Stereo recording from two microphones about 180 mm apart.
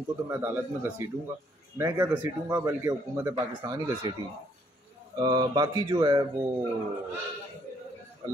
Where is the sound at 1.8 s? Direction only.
15° right (ahead or behind).